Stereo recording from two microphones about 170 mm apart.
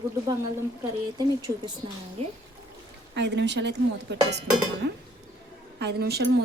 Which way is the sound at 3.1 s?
90° right.